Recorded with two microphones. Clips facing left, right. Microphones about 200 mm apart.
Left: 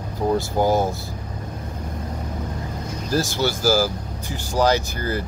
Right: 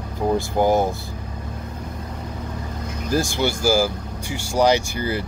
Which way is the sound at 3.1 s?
50° right (ahead or behind).